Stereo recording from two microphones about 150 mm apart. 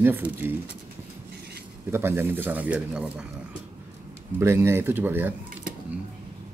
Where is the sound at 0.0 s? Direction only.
15° right (ahead or behind).